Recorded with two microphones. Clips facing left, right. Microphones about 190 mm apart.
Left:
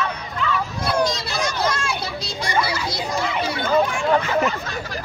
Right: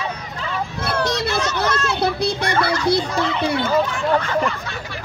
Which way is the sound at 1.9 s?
60° right (ahead or behind).